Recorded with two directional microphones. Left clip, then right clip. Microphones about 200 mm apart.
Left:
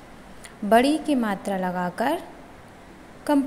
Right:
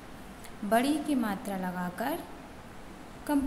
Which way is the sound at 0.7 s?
30° left (ahead or behind).